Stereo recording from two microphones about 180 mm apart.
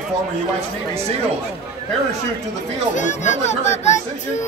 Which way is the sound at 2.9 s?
40° left (ahead or behind).